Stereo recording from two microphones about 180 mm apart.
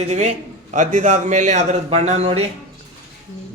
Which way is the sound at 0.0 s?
40° right (ahead or behind).